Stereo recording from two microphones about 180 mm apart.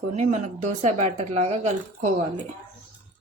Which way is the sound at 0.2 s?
40° right (ahead or behind).